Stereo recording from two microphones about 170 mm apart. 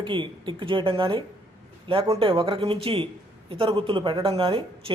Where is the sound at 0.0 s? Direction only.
30° right (ahead or behind).